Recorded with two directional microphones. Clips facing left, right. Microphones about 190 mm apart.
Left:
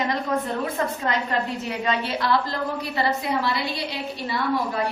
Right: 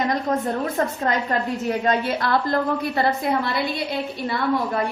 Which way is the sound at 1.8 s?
50° right (ahead or behind).